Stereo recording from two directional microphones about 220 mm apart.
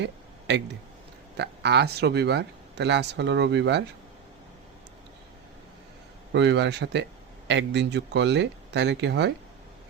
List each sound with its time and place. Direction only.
0.0 s a sound: 55° right (ahead or behind)
1.4 s speech: 50° right (ahead or behind)
6.3 s speech: 55° right (ahead or behind)